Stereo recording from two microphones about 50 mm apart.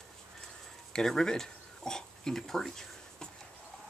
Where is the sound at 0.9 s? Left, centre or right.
Centre.